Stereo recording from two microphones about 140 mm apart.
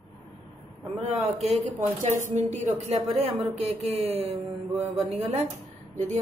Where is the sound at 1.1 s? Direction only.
45° right (ahead or behind).